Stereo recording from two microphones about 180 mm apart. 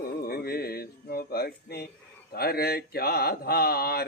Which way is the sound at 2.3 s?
60° left (ahead or behind).